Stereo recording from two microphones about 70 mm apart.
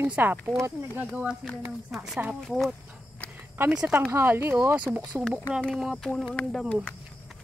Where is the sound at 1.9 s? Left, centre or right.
Centre.